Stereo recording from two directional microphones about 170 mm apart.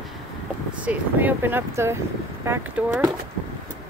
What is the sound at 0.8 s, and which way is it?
Speech, 10° right (ahead or behind).